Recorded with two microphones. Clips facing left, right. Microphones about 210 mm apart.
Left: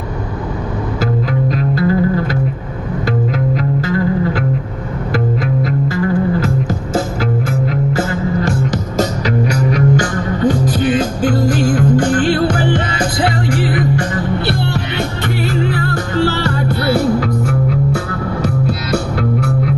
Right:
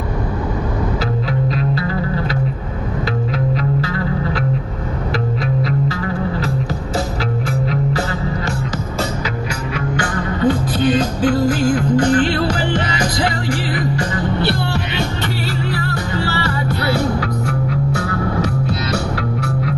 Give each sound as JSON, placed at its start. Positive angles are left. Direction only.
{"t": 1.5, "sound": "music", "side_deg": 50}
{"t": 5.6, "sound": "music", "side_deg": 50}
{"t": 7.4, "sound": "music", "side_deg": 50}
{"t": 9.7, "sound": "music", "side_deg": 40}